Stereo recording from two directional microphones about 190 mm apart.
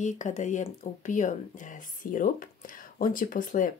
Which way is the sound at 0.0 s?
40° left (ahead or behind).